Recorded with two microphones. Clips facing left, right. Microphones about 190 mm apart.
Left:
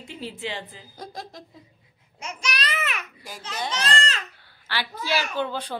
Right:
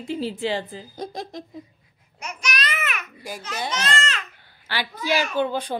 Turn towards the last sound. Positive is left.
turn(degrees=-15)  # may be behind; listen again after turning